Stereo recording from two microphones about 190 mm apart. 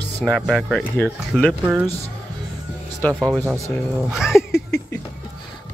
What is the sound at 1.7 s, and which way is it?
Speech, 15° right (ahead or behind).